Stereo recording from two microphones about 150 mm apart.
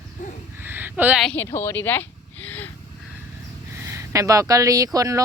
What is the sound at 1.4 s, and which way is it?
Speech, 15° left (ahead or behind).